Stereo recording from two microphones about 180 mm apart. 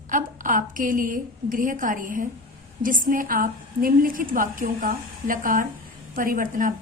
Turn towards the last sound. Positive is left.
turn(degrees=-50)  # may be behind; listen again after turning